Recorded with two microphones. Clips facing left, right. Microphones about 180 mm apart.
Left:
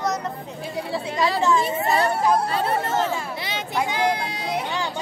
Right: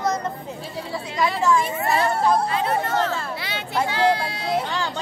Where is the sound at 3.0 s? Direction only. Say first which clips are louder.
Even; 15° left (ahead or behind).